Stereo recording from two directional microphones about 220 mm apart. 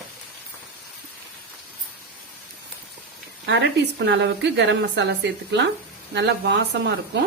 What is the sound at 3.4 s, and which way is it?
A woman's voice, 50° right (ahead or behind).